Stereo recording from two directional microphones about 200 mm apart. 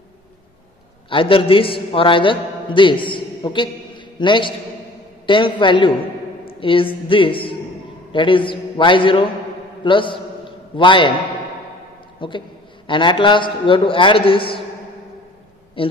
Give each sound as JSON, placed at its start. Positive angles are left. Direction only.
{"t": 1.1, "sound": "a man's voice", "side_deg": 25}
{"t": 12.2, "sound": "a man's voice", "side_deg": 25}
{"t": 15.8, "sound": "speech", "side_deg": 25}